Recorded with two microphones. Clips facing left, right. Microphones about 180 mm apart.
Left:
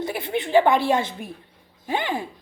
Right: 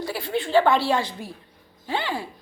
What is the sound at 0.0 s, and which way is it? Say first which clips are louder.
A woman's voice: left 1 dB; 20° left (ahead or behind).